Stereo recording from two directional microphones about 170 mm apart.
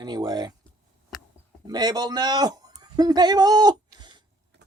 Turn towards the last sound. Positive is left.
turn(degrees=-25)  # may be behind; listen again after turning